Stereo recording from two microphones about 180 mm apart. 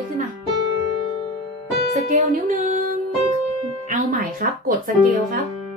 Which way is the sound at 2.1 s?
45° right (ahead or behind).